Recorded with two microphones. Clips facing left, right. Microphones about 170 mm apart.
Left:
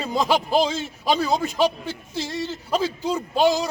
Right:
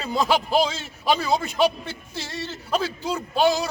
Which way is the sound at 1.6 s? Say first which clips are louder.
Even; 5° right (ahead or behind).